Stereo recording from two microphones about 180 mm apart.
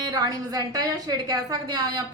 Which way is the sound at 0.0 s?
20° right (ahead or behind).